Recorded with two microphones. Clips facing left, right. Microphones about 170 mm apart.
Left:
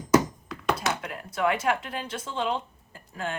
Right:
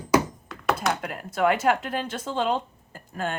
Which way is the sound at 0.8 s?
50° right (ahead or behind).